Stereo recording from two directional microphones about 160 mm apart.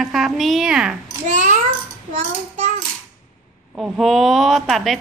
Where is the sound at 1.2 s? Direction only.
50° right (ahead or behind).